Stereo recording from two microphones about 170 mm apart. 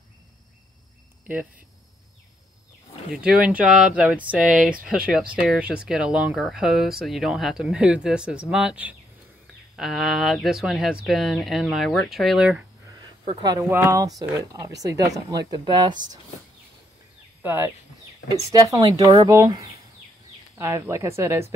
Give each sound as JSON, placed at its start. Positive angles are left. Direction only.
{"t": 1.2, "sound": "speech", "side_deg": -10}
{"t": 3.2, "sound": "speech", "side_deg": -5}
{"t": 13.7, "sound": "speech", "side_deg": -15}
{"t": 17.4, "sound": "speech", "side_deg": -15}